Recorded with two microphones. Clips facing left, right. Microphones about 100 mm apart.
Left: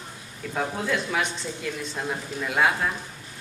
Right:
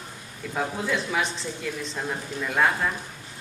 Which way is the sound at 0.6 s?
Centre (ahead or behind).